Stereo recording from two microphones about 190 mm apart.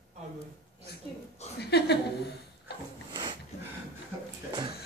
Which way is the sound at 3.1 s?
20° right (ahead or behind).